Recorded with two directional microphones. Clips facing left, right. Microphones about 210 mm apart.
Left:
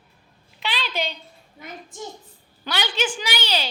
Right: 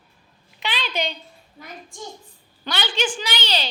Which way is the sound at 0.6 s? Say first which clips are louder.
Right 1 dB; centre (ahead or behind).